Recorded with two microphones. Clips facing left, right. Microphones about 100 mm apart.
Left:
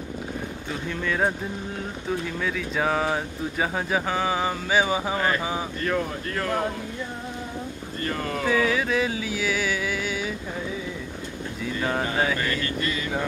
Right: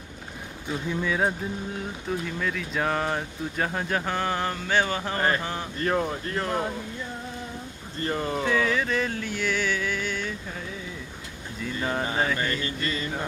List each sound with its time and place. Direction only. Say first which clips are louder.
0.7 s speech: right 2 dB; 10° right (ahead or behind); by 5.2 s 10° left (ahead or behind)
5.8 s speech: right 4 dB; 35° right (ahead or behind)
8.0 s speech: right 1 dB; 25° right (ahead or behind)
8.5 s speech: left 3 dB; 5° left (ahead or behind)
11.6 s speech: left 2 dB; centre (ahead or behind)